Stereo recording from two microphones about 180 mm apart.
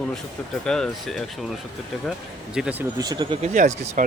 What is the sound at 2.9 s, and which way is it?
Speech, 20° right (ahead or behind).